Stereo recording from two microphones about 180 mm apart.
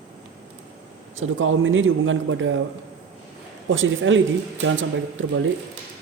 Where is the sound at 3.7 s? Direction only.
90° right.